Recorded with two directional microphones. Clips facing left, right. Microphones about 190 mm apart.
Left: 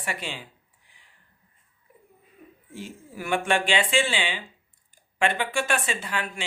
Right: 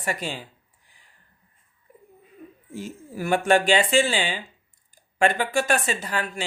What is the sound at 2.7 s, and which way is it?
Speech, 40° right (ahead or behind).